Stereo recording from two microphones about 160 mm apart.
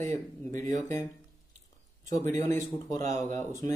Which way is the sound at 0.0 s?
15° left (ahead or behind).